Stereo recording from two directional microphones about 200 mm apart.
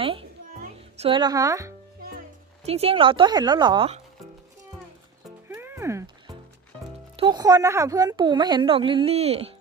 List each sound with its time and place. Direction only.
0.0 s a sound: 25° right (ahead or behind)
0.6 s speech: 30° right (ahead or behind)
2.6 s a woman's voice: 30° right (ahead or behind)
5.5 s music: 10° right (ahead or behind)
7.2 s a woman's voice: 20° right (ahead or behind)